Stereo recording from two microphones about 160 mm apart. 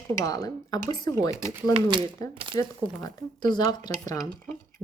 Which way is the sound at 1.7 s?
30° right (ahead or behind).